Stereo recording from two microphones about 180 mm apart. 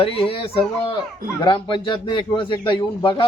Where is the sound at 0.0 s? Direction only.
30° left (ahead or behind).